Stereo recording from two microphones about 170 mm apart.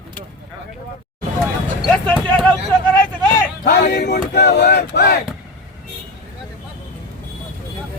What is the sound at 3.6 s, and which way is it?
Speech, 70° left (ahead or behind).